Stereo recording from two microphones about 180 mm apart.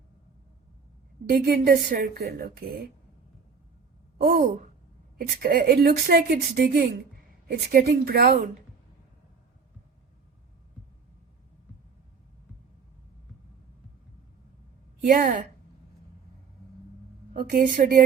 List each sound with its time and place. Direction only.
1.3 s a woman's voice: 60° right (ahead or behind)
4.2 s a woman's voice: 50° right (ahead or behind)
15.0 s a woman's voice: 45° right (ahead or behind)
17.3 s a woman's voice: 55° right (ahead or behind)